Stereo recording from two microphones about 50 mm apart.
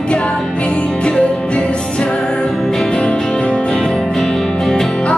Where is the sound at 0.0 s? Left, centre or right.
Left.